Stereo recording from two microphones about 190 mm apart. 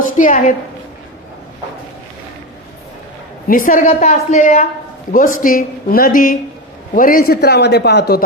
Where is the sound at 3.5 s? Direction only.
45° left (ahead or behind).